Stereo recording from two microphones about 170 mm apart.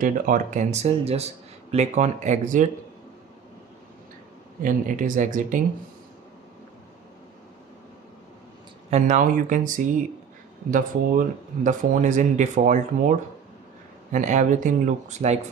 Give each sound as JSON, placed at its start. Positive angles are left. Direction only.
{"t": 0.0, "sound": "speech", "side_deg": -50}
{"t": 4.6, "sound": "speech", "side_deg": -50}
{"t": 8.9, "sound": "speech", "side_deg": -45}
{"t": 14.1, "sound": "speech", "side_deg": -45}